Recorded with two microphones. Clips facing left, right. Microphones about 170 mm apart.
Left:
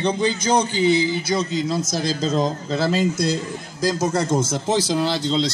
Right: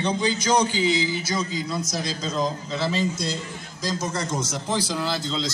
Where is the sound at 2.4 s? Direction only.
45° left (ahead or behind).